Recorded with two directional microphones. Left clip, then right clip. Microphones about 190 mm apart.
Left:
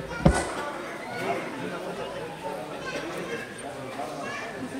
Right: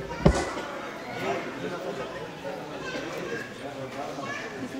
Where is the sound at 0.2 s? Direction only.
20° right (ahead or behind).